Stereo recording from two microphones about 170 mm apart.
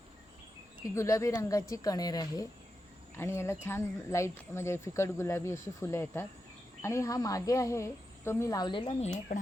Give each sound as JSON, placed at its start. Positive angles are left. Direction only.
{"t": 0.9, "sound": "speech", "side_deg": 15}
{"t": 9.3, "sound": "speech", "side_deg": 45}